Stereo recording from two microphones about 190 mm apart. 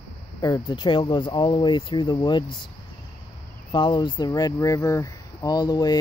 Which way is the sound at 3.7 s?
25° left (ahead or behind).